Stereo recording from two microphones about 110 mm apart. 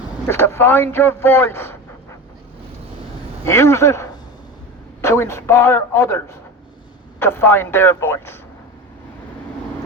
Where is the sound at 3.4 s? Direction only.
25° left (ahead or behind).